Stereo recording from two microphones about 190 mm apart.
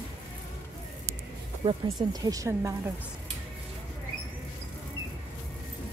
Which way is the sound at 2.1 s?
20° right (ahead or behind).